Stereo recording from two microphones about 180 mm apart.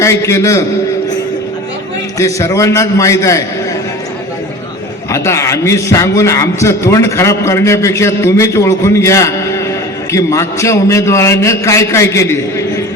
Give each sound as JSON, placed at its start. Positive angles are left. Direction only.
{"t": 0.0, "sound": "a man's voice", "side_deg": 15}
{"t": 2.1, "sound": "a man's voice", "side_deg": 15}
{"t": 5.1, "sound": "a man's voice", "side_deg": 15}